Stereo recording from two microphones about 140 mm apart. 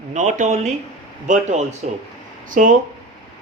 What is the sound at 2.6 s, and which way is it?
Speech, 65° right (ahead or behind).